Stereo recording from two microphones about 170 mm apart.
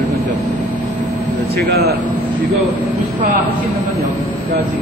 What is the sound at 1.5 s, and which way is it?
Speech, 65° right (ahead or behind).